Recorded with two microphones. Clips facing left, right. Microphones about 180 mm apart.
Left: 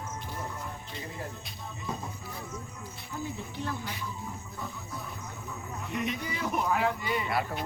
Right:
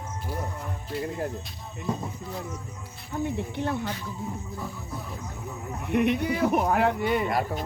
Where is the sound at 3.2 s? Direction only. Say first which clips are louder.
Right 8 dB; 65° right (ahead or behind).